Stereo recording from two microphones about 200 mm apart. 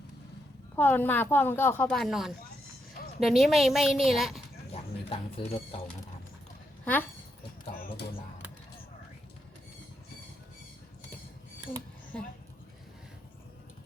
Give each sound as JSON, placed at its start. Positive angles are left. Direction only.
{"t": 0.8, "sound": "a woman's voice", "side_deg": 10}
{"t": 4.7, "sound": "cat", "side_deg": 30}
{"t": 6.8, "sound": "speech", "side_deg": 10}
{"t": 12.1, "sound": "a sound", "side_deg": 5}